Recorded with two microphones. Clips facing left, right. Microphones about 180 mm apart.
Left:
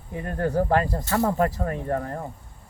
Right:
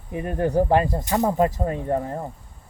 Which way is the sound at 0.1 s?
15° right (ahead or behind).